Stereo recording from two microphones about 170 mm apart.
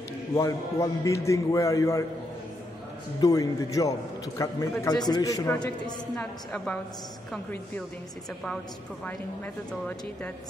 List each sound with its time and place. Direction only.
0.3 s a man's voice: 20° left (ahead or behind)
3.2 s a man's voice: 20° left (ahead or behind)
6.1 s a woman's voice: 5° left (ahead or behind)
9.7 s speech: 10° left (ahead or behind)